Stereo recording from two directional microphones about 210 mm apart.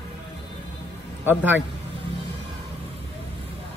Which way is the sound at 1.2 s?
10° right (ahead or behind).